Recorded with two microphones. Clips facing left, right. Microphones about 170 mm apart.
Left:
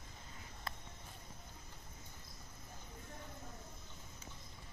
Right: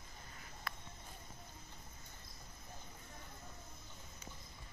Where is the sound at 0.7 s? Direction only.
25° left (ahead or behind).